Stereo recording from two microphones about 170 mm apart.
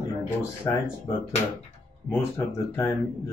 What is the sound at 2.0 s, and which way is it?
Speech, 15° left (ahead or behind).